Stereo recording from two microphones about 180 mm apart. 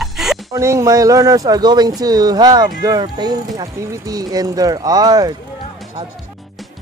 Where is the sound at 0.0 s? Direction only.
Centre (ahead or behind).